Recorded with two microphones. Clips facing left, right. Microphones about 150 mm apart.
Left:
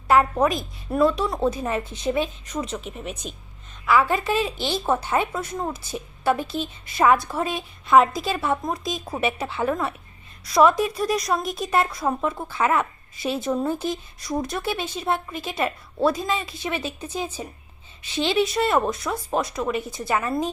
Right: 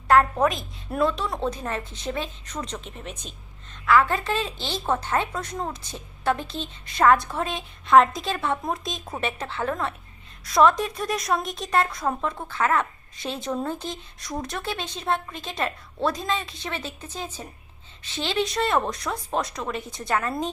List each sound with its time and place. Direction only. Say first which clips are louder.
0.1 s a woman's voice: left 1 dB; 5° left (ahead or behind)